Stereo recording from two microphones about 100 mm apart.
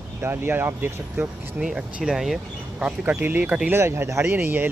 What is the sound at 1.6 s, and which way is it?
Speech, 5° right (ahead or behind).